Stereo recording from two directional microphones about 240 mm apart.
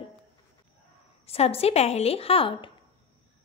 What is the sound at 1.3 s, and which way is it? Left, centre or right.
Speech, left.